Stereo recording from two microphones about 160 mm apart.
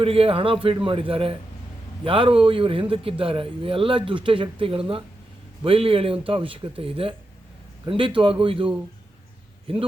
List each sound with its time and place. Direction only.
0.0 s a man's voice: 35° right (ahead or behind)